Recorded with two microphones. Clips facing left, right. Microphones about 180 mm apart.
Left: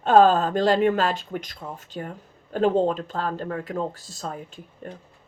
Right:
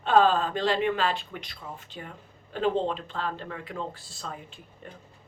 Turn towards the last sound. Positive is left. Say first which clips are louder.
# left 7 dB
turn(degrees=45)  # may be behind; listen again after turning